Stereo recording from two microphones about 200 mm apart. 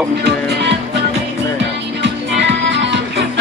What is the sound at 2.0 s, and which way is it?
Music, 60° right (ahead or behind).